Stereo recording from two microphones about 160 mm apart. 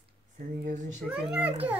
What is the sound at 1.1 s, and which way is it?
Speech, 5° right (ahead or behind).